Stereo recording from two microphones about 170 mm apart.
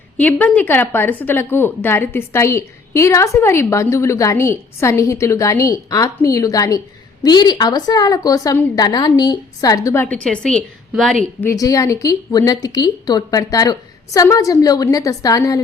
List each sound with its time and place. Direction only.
0.2 s a woman's voice: 10° left (ahead or behind)
11.3 s a woman's voice: 15° left (ahead or behind)